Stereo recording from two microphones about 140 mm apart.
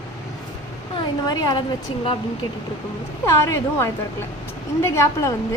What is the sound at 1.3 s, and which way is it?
Speech, 30° left (ahead or behind).